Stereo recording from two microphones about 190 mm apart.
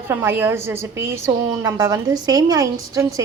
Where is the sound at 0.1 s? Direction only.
10° right (ahead or behind).